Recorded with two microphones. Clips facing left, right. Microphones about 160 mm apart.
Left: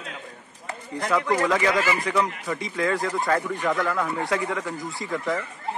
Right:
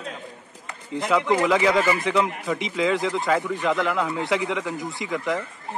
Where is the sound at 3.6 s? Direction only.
20° right (ahead or behind).